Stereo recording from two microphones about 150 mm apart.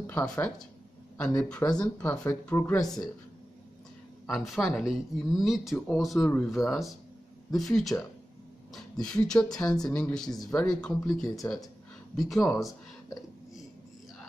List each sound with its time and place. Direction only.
0.0 s speech: 10° left (ahead or behind)
1.6 s speech: 25° left (ahead or behind)
2.0 s speech: 15° left (ahead or behind)
4.3 s speech: centre (ahead or behind)
9.0 s speech: 5° left (ahead or behind)
10.3 s speech: 25° left (ahead or behind)
10.6 s speech: 5° left (ahead or behind)